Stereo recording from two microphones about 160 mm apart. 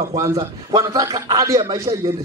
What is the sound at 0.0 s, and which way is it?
A man's voice, 20° right (ahead or behind).